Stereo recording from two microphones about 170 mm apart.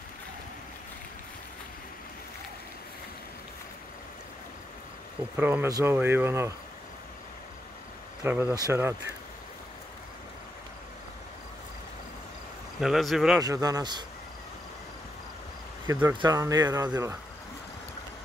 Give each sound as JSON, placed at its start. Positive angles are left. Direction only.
{"t": 5.4, "sound": "speech", "side_deg": -10}
{"t": 8.2, "sound": "speech", "side_deg": -10}
{"t": 12.8, "sound": "speech", "side_deg": 0}
{"t": 13.4, "sound": "speech", "side_deg": -20}
{"t": 15.9, "sound": "speech", "side_deg": -15}